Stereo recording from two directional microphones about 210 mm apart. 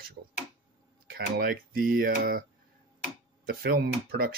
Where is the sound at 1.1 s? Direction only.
45° right (ahead or behind).